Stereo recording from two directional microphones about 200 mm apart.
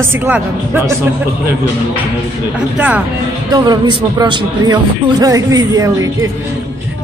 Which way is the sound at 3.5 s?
20° right (ahead or behind).